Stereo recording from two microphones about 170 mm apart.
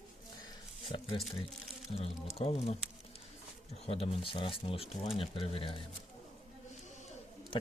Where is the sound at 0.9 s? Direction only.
30° left (ahead or behind).